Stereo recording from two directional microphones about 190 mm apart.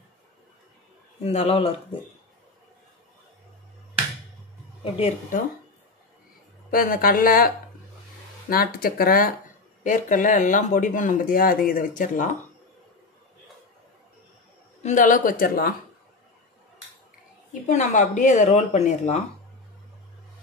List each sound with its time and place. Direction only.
1.2 s speech: 35° left (ahead or behind)
6.7 s speech: 50° left (ahead or behind)
14.8 s speech: 40° left (ahead or behind)
17.6 s speech: 40° left (ahead or behind)